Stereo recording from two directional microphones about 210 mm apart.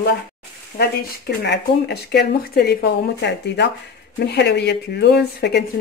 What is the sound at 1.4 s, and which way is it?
Speech, 50° left (ahead or behind).